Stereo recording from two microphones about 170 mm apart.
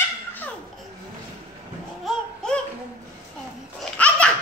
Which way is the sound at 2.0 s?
5° left (ahead or behind).